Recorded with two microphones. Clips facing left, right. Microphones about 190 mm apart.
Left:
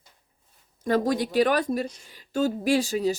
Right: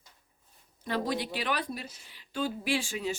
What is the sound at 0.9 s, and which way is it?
Speech, 45° left (ahead or behind).